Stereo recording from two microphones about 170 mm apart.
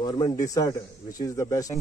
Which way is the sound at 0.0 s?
25° left (ahead or behind).